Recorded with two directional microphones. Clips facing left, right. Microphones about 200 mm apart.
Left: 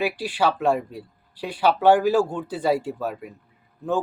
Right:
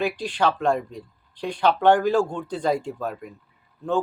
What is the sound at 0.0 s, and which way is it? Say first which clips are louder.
Speech: even; 5° left (ahead or behind).